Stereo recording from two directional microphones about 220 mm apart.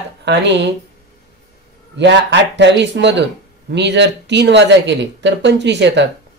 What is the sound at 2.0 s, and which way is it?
Speech, 55° right (ahead or behind).